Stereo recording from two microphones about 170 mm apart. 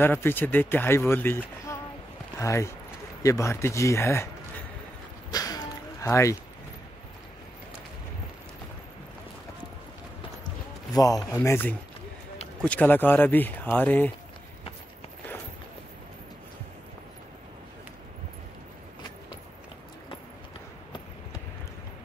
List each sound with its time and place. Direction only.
0.0 s speech: 10° left (ahead or behind)
5.3 s a sound: 20° left (ahead or behind)
10.9 s a man's voice: 20° left (ahead or behind)